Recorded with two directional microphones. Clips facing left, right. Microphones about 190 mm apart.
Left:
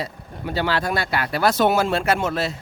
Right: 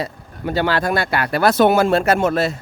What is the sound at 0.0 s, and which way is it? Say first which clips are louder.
Speech: right 4 dB; 50° right (ahead or behind).